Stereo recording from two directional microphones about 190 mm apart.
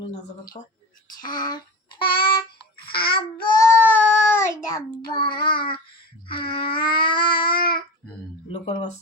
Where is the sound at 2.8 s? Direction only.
55° left (ahead or behind).